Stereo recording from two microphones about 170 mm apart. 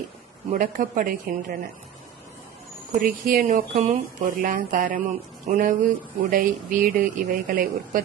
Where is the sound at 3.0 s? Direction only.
55° right (ahead or behind).